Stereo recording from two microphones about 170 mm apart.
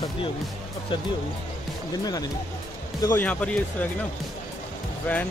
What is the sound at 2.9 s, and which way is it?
Speech, 20° left (ahead or behind).